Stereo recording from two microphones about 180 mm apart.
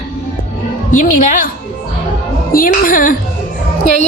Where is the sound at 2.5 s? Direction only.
50° left (ahead or behind).